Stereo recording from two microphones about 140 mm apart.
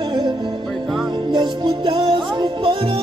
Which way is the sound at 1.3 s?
35° right (ahead or behind).